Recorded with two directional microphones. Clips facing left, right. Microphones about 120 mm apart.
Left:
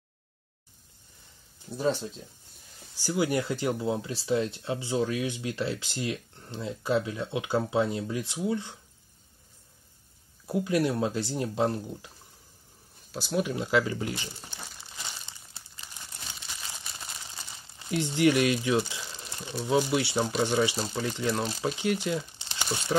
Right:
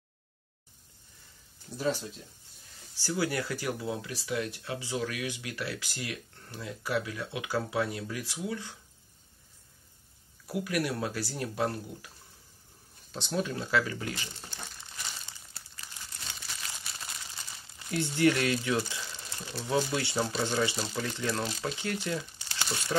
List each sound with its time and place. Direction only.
1.8 s speech: 30° left (ahead or behind)
10.4 s speech: 25° left (ahead or behind)
13.1 s speech: 5° left (ahead or behind); by 14.6 s 25° left (ahead or behind)
14.6 s crumpling: 10° left (ahead or behind)
19.4 s speech: 15° left (ahead or behind)